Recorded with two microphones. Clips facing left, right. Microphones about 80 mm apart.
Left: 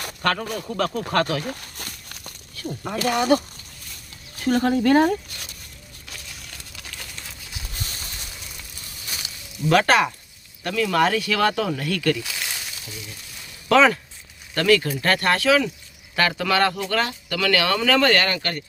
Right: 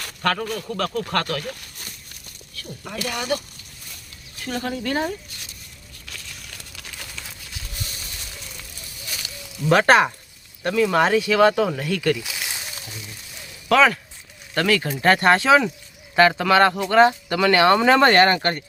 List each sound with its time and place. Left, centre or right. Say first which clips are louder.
0.2 s speech: even; centre
0.4 s speech: left 1 dB; centre
1.8 s a sound: left 4 dB; left
2.6 s speech: left 5 dB; left
6.4 s crumpling: even; centre
9.6 s speech: right 2 dB; right; by 12.5 s centre
13.7 s speech: even; centre; by 15.7 s right
16.4 s speech: right 4 dB; centre; by 18.6 s right